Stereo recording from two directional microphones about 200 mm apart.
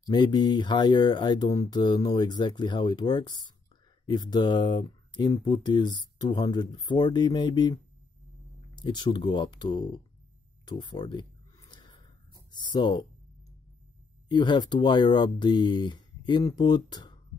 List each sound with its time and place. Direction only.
0.0 s speech: 20° left (ahead or behind)
11.7 s a sound: 20° left (ahead or behind)
12.4 s speech: 20° left (ahead or behind)
14.3 s speech: 20° left (ahead or behind)